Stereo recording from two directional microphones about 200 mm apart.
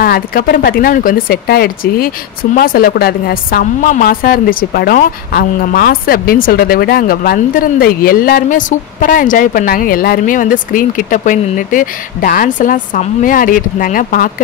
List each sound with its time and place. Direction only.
0.0 s speech: 50° left (ahead or behind)